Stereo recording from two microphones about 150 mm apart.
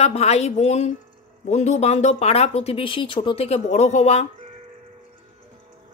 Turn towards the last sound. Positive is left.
turn(degrees=45)  # may be behind; listen again after turning